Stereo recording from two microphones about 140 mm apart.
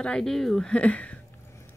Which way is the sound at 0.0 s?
5° left (ahead or behind).